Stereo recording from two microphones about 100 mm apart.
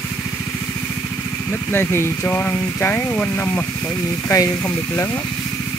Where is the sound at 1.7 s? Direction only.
25° left (ahead or behind).